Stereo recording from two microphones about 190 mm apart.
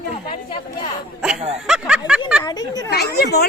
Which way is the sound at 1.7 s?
5° right (ahead or behind).